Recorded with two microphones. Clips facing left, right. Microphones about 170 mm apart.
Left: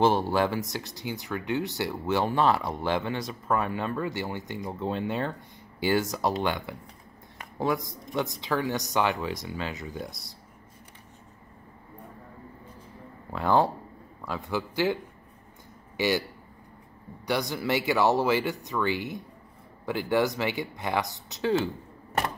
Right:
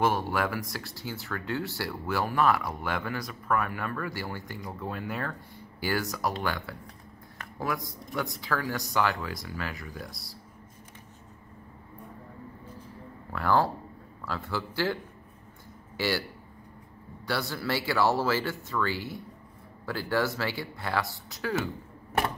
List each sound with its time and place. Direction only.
0.0 s speech: 25° left (ahead or behind)
13.3 s speech: 20° left (ahead or behind)
16.0 s speech: 15° left (ahead or behind)
17.3 s speech: 15° left (ahead or behind)